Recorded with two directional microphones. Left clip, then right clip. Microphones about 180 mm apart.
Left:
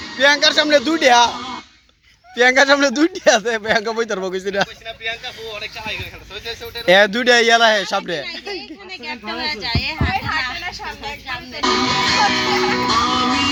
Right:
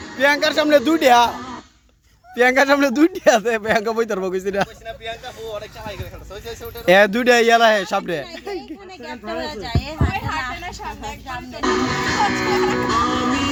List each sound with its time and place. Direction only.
0.2 s speech: 10° right (ahead or behind)
6.8 s speech: 20° right (ahead or behind)
9.6 s a child's voice: 50° right (ahead or behind)
10.2 s a woman's voice: 15° left (ahead or behind)
11.6 s speech: 45° left (ahead or behind)
12.2 s music: 40° left (ahead or behind)
12.5 s music: 20° left (ahead or behind)
13.1 s music: 45° left (ahead or behind)